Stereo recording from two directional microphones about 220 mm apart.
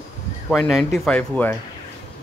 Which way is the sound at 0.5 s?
5° left (ahead or behind).